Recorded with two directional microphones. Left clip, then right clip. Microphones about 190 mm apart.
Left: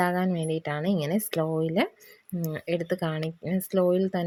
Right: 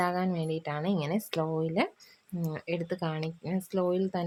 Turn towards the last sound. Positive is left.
turn(degrees=20)  # may be behind; listen again after turning